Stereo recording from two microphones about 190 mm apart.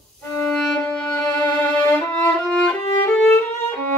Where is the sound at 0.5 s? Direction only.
5° left (ahead or behind).